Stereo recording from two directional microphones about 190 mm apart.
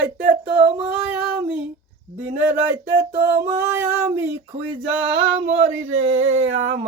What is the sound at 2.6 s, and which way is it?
Speech, 15° right (ahead or behind).